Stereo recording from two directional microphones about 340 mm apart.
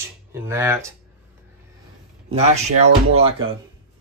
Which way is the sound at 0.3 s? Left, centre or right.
Centre.